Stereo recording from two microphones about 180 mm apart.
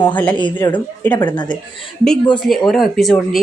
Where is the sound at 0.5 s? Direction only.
10° left (ahead or behind).